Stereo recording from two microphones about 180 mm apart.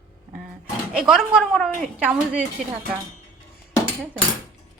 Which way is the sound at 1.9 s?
5° right (ahead or behind).